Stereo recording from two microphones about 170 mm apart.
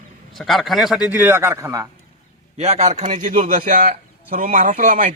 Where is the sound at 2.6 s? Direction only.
40° right (ahead or behind).